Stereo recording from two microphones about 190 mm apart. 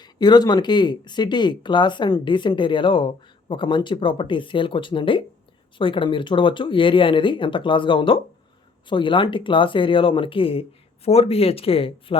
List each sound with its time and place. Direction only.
0.0 s speech: 20° left (ahead or behind)